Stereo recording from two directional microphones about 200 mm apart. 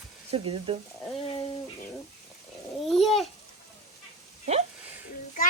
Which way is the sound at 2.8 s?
Centre (ahead or behind).